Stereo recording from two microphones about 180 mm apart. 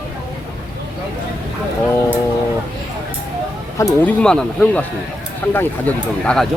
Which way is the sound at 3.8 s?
15° left (ahead or behind).